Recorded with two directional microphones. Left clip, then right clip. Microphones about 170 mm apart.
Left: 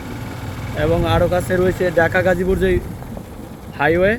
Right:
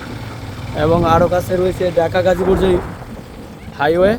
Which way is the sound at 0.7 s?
30° right (ahead or behind).